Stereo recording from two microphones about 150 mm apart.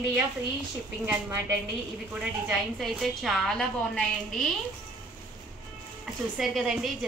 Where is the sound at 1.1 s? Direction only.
20° right (ahead or behind).